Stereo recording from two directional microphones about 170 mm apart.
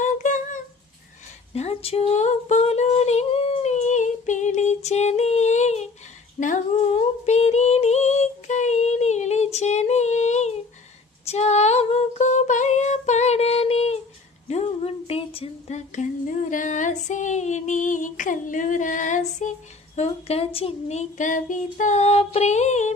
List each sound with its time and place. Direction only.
0.0 s humming: 45° left (ahead or behind)
1.5 s female singing: 35° left (ahead or behind)
14.4 s a sound: 40° left (ahead or behind)
20.0 s humming: 35° left (ahead or behind)